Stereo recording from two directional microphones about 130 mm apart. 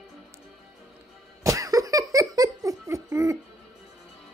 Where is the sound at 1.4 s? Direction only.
25° right (ahead or behind).